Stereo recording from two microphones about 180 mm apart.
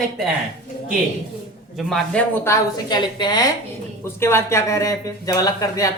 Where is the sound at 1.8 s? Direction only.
Centre (ahead or behind).